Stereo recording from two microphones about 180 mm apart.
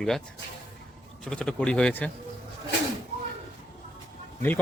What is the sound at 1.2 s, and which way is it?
Speech, 5° left (ahead or behind).